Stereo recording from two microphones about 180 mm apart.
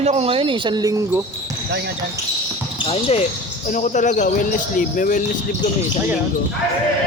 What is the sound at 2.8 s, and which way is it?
Speech, 35° left (ahead or behind).